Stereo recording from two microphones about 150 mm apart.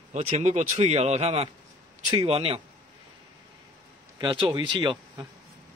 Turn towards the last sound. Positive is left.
turn(degrees=-30)  # may be behind; listen again after turning